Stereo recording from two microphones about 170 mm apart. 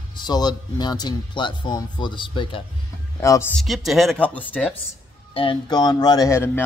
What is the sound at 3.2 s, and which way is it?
Speech, 15° left (ahead or behind).